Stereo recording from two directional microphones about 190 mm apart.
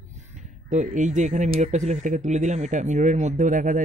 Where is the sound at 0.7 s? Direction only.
40° right (ahead or behind).